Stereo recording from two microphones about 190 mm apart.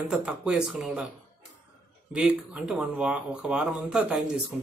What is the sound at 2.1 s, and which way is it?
Speech, 5° right (ahead or behind).